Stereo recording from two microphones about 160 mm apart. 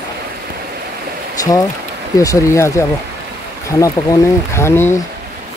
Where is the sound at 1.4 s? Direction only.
20° left (ahead or behind).